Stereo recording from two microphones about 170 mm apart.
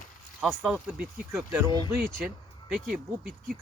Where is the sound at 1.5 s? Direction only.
15° right (ahead or behind).